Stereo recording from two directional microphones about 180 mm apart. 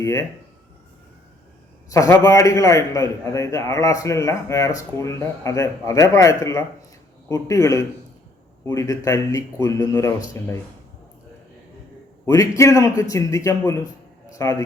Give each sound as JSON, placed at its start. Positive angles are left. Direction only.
{"t": 0.0, "sound": "a man's voice", "side_deg": 15}
{"t": 1.9, "sound": "a man's voice", "side_deg": 20}
{"t": 12.2, "sound": "a man's voice", "side_deg": 15}